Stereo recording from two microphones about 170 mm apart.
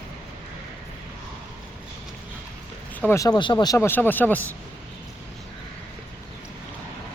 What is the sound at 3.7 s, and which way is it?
Speech, 15° left (ahead or behind).